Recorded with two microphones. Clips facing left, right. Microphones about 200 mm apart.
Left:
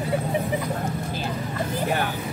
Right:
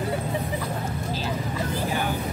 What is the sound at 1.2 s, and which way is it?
Vehicle, 55° left (ahead or behind).